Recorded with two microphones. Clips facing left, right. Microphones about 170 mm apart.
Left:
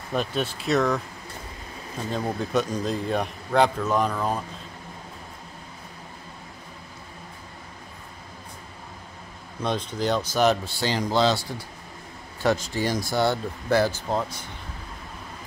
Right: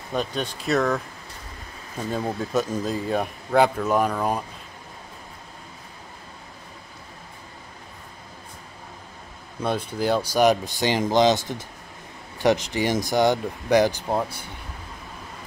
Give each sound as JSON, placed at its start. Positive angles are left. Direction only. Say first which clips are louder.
{"t": 0.1, "sound": "speech", "louder": "even", "side_deg": 0}
{"t": 2.1, "sound": "speech", "louder": "even", "side_deg": -5}
{"t": 9.6, "sound": "speech", "louder": "right 2 dB", "side_deg": -10}